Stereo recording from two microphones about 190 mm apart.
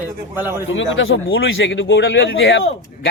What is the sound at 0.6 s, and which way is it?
A man's voice, 90° left.